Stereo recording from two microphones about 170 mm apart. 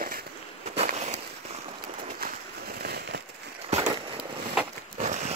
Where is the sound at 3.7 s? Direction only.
35° right (ahead or behind).